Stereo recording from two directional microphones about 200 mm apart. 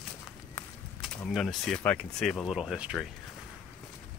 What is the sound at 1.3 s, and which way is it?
Speech, centre (ahead or behind).